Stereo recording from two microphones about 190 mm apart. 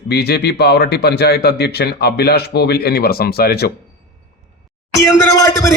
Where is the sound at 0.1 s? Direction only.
60° left (ahead or behind).